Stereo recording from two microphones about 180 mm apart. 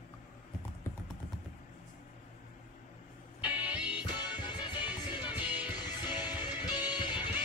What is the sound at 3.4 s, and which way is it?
Music, 10° right (ahead or behind).